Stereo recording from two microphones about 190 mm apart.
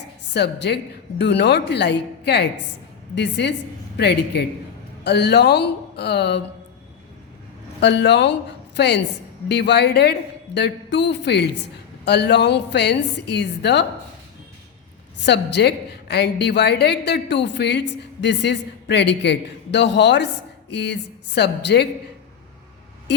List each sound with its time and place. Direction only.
0.3 s a woman's voice: 60° left (ahead or behind)
7.8 s a woman's voice: 65° left (ahead or behind)
15.3 s a woman's voice: 65° left (ahead or behind)